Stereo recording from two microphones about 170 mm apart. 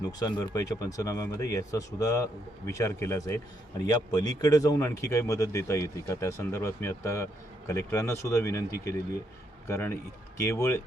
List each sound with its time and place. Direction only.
0.0 s speech: 25° left (ahead or behind)
9.6 s speech: 15° left (ahead or behind)